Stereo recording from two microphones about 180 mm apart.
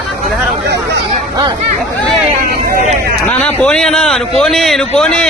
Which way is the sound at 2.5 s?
60° right (ahead or behind).